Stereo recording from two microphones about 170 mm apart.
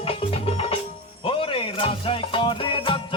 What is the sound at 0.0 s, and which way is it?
Music, 35° left (ahead or behind).